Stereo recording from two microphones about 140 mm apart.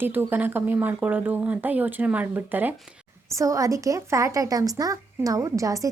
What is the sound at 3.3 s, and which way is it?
Speech, 25° right (ahead or behind).